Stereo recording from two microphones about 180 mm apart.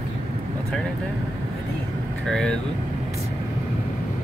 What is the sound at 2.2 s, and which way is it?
Speech, 5° left (ahead or behind).